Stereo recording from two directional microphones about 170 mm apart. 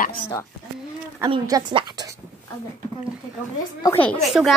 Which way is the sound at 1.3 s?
30° right (ahead or behind).